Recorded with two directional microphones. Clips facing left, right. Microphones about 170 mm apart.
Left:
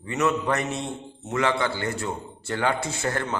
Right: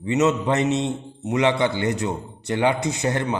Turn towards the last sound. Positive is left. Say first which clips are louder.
# right 5 dB
turn(degrees=-20)  # may be behind; listen again after turning